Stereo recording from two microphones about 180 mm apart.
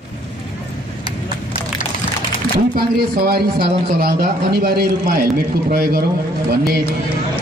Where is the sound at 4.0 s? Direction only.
60° right (ahead or behind).